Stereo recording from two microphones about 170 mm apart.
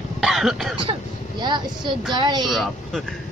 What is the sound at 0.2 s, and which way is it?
Cough, centre (ahead or behind).